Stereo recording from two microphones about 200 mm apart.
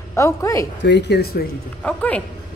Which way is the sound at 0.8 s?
60° left (ahead or behind).